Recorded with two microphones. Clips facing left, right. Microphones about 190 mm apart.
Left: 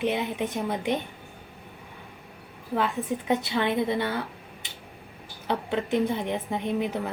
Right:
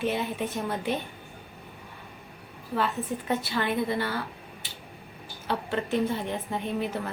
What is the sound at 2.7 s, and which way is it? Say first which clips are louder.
A woman's voice: left 2 dB; 15° left (ahead or behind).